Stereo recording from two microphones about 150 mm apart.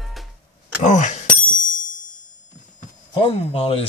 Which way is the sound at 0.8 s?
55° left (ahead or behind).